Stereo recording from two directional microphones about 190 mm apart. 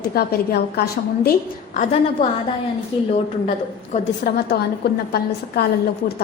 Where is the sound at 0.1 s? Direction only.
55° left (ahead or behind).